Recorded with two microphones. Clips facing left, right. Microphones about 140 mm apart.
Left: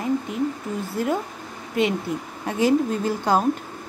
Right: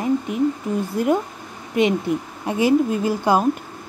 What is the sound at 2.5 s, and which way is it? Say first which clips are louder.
Speech: right 2 dB; 10° right (ahead or behind).